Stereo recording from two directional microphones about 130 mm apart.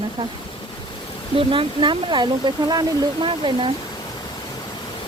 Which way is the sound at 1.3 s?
45° right (ahead or behind).